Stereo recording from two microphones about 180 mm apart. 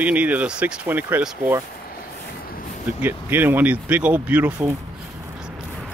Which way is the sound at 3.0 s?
10° right (ahead or behind).